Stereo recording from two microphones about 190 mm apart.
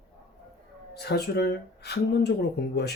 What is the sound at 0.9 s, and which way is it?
Speech, 60° left (ahead or behind).